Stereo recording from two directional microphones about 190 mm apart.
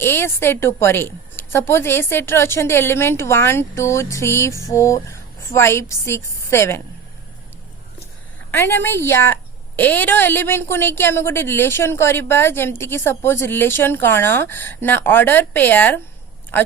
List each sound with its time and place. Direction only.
0.0 s a woman's voice: 10° left (ahead or behind)
8.4 s a woman's voice: 10° left (ahead or behind)